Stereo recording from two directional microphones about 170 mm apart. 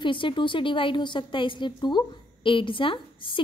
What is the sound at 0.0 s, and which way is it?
A woman's voice, 30° left (ahead or behind).